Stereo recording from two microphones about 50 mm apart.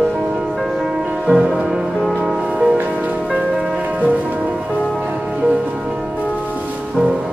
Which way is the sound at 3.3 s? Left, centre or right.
Centre.